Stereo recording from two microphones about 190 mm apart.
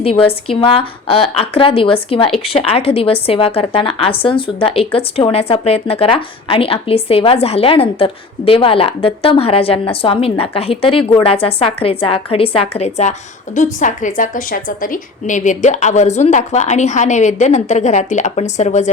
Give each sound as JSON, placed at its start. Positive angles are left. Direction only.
{"t": 0.0, "sound": "a woman's voice", "side_deg": 30}